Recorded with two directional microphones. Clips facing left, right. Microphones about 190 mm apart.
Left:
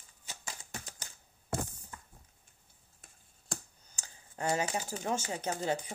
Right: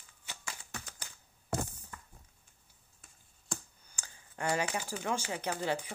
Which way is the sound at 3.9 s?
40° left (ahead or behind).